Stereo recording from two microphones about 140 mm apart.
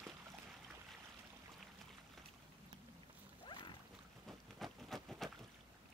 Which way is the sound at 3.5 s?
35° left (ahead or behind).